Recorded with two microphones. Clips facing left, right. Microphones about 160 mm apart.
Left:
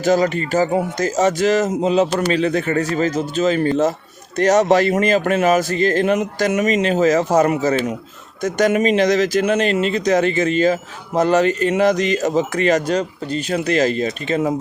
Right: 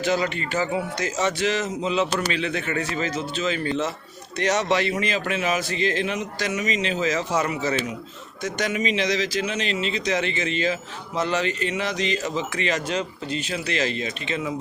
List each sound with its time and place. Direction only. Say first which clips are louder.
0.0 s speech: left 7 dB; 40° left (ahead or behind)